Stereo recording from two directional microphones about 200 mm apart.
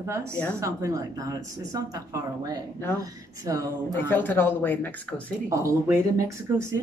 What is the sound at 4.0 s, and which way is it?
Speech, 10° left (ahead or behind).